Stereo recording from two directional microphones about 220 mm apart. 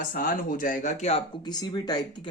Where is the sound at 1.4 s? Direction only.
20° left (ahead or behind).